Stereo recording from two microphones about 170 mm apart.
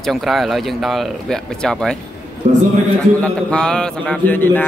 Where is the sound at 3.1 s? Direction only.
5° left (ahead or behind).